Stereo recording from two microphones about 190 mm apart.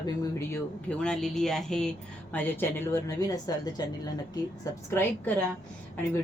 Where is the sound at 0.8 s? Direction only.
5° left (ahead or behind).